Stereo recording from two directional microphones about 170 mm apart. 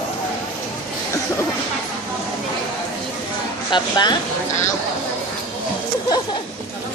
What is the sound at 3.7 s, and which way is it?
Speech, 25° left (ahead or behind).